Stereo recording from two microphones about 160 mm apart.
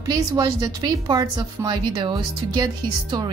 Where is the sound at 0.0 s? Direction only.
25° right (ahead or behind).